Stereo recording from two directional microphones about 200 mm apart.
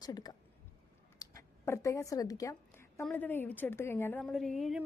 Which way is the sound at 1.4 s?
15° left (ahead or behind).